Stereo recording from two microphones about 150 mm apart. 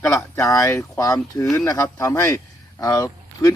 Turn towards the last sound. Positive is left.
turn(degrees=25)  # may be behind; listen again after turning